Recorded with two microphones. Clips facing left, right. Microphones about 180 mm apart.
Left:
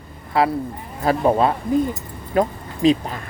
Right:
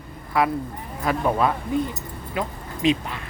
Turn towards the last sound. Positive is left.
turn(degrees=40)  # may be behind; listen again after turning